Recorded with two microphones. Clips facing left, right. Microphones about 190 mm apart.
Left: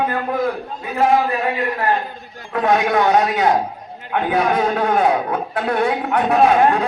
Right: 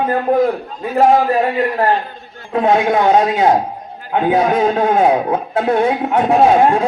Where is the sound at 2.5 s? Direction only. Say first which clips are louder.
Right 3 dB; 25° right (ahead or behind).